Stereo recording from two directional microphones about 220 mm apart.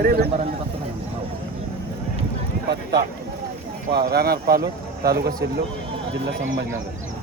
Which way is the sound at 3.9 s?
45° right (ahead or behind).